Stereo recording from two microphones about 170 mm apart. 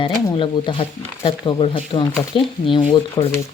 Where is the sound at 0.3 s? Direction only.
30° left (ahead or behind).